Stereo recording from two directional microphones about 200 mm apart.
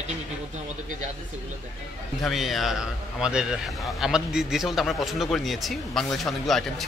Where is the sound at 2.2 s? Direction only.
Centre (ahead or behind).